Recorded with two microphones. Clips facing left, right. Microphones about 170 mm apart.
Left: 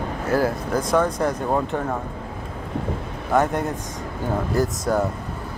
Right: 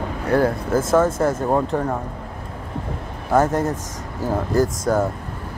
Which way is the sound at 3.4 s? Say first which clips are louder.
Right 3 dB; 40° right (ahead or behind).